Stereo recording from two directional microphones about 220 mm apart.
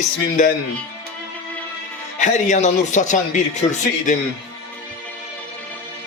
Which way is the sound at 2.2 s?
35° left (ahead or behind).